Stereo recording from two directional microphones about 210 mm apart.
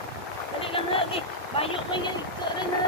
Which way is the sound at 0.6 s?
25° left (ahead or behind).